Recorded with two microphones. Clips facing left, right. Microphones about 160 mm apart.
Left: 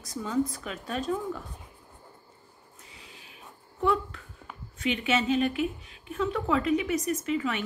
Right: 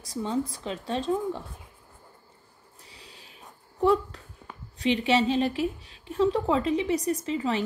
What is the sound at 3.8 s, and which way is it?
A woman's voice, 35° right (ahead or behind).